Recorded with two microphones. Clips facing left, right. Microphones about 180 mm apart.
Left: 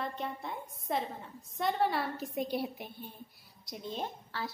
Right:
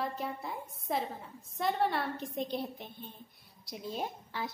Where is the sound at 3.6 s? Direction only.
Centre (ahead or behind).